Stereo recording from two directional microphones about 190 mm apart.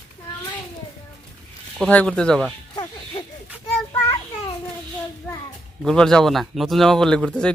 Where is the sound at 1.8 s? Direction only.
5° left (ahead or behind).